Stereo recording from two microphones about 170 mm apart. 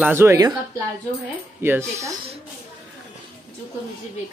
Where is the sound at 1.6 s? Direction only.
15° right (ahead or behind).